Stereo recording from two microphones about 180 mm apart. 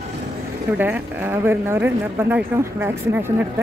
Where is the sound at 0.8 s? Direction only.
10° right (ahead or behind).